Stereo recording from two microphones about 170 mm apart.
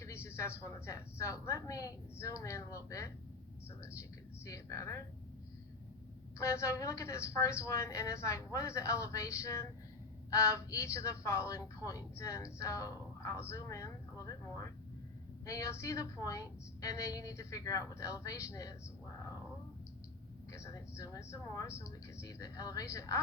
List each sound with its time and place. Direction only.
0.0 s a woman's voice: 15° left (ahead or behind)
4.4 s speech: 20° left (ahead or behind)
6.4 s a woman's voice: 20° left (ahead or behind)
20.5 s speech: 20° left (ahead or behind)